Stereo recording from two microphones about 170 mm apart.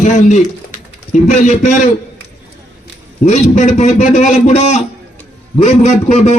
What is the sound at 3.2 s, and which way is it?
A man's voice, 45° left (ahead or behind).